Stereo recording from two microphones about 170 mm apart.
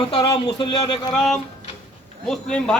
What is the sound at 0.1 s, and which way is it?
Speech, 30° left (ahead or behind).